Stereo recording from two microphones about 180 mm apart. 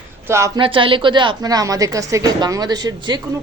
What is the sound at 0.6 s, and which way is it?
A woman's voice, 30° right (ahead or behind).